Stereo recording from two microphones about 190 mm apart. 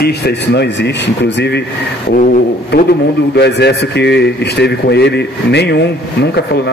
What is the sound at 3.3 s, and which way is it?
A man's voice, 60° left (ahead or behind).